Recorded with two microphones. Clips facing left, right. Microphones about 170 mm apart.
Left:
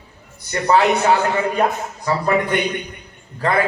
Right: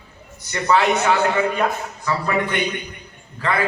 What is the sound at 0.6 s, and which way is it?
A man's voice, 35° left (ahead or behind).